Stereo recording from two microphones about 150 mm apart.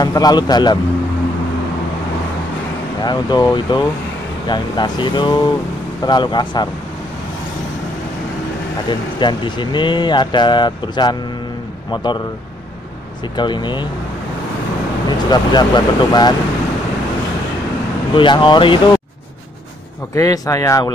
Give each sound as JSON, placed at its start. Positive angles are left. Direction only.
{"t": 0.0, "sound": "speech", "side_deg": 25}
{"t": 3.0, "sound": "speech", "side_deg": 30}
{"t": 8.8, "sound": "speech", "side_deg": 30}
{"t": 13.4, "sound": "speech", "side_deg": 30}
{"t": 15.0, "sound": "speech", "side_deg": 30}
{"t": 18.1, "sound": "speech", "side_deg": 35}
{"t": 20.2, "sound": "speech", "side_deg": 25}